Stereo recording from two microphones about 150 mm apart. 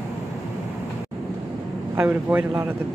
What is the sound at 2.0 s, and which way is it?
Speech, 10° right (ahead or behind).